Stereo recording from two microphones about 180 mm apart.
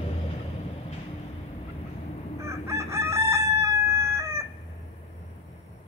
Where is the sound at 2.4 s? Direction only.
15° right (ahead or behind).